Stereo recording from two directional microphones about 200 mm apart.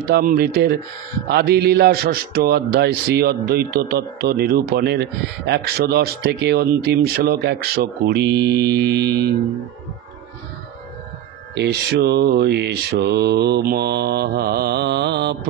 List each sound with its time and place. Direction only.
0.0 s speech: 45° right (ahead or behind)
11.5 s speech: 55° right (ahead or behind)